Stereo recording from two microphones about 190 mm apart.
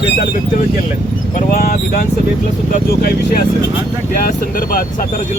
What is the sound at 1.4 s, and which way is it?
Speech, 40° left (ahead or behind).